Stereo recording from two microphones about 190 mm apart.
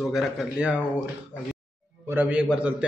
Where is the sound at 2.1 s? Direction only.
5° right (ahead or behind).